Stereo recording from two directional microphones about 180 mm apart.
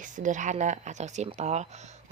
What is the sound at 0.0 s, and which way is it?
A woman's voice, 45° right (ahead or behind).